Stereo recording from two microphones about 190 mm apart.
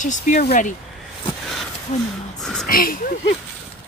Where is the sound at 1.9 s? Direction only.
40° left (ahead or behind).